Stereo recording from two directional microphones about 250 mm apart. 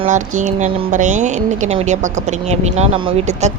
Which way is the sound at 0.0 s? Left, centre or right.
Right.